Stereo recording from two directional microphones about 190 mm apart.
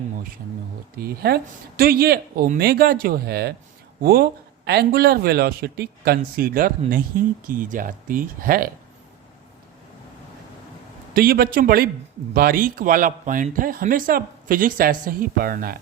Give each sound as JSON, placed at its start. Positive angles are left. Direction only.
{"t": 0.9, "sound": "a man's voice", "side_deg": -55}
{"t": 11.1, "sound": "a man's voice", "side_deg": -50}